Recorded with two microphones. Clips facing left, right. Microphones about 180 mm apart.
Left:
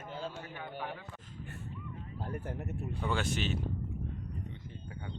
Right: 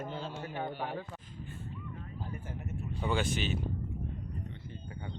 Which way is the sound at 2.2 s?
65° left (ahead or behind).